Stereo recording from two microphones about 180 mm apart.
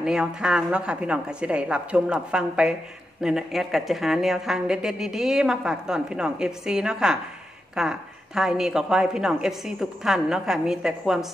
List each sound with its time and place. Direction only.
0.0 s a woman's voice: 5° right (ahead or behind)